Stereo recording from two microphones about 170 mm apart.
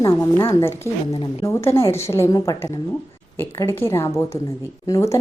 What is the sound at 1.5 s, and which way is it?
Speech, 15° left (ahead or behind).